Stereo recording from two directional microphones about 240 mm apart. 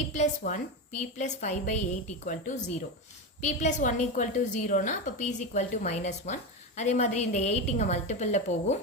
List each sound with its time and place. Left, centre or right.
0.2 s a woman's voice: left